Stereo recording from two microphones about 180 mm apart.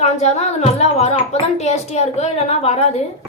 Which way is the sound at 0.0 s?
40° left (ahead or behind).